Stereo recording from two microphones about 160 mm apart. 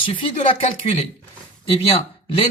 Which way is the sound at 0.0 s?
30° left (ahead or behind).